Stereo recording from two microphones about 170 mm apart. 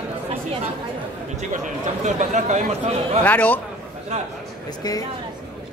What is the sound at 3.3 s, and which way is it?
Speech, 10° left (ahead or behind).